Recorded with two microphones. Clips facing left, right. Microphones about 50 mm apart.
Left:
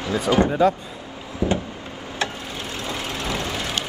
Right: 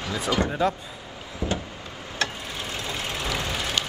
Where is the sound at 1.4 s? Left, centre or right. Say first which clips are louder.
Left 6 dB; left.